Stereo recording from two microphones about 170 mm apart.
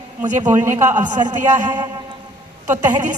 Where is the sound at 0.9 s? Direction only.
45° right (ahead or behind).